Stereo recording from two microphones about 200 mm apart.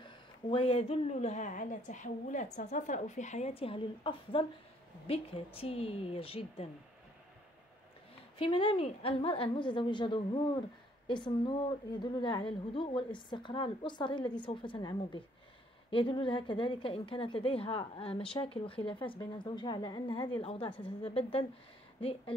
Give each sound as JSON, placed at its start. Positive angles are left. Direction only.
{"t": 0.0, "sound": "a woman's voice", "side_deg": 25}
{"t": 8.4, "sound": "a woman's voice", "side_deg": 25}